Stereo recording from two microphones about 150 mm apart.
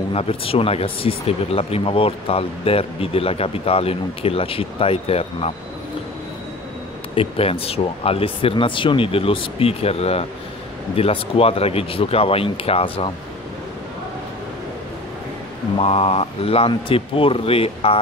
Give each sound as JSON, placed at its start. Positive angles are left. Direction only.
{"t": 0.1, "sound": "speech", "side_deg": 40}
{"t": 7.2, "sound": "speech", "side_deg": 40}
{"t": 15.8, "sound": "speech", "side_deg": 40}